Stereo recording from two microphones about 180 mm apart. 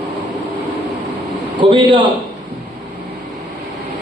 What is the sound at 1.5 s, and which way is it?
Speech, 25° right (ahead or behind).